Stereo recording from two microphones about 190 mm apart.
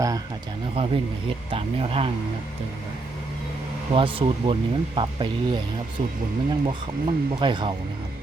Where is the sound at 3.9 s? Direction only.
30° right (ahead or behind).